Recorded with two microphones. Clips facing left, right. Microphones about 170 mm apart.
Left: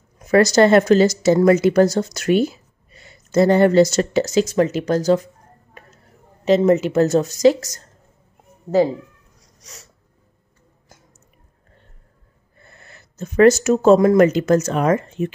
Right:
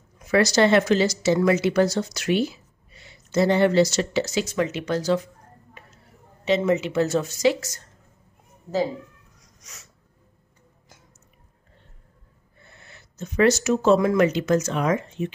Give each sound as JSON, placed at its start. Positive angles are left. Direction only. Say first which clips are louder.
{"t": 0.2, "sound": "speech", "louder": "left 5 dB", "side_deg": 45}
{"t": 6.4, "sound": "speech", "louder": "left 6 dB", "side_deg": 45}
{"t": 9.4, "sound": "a sound", "louder": "left 6 dB", "side_deg": 35}
{"t": 12.6, "sound": "speech", "louder": "left 3 dB", "side_deg": 50}